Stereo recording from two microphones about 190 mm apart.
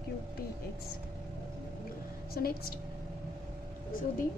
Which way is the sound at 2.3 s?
50° left (ahead or behind).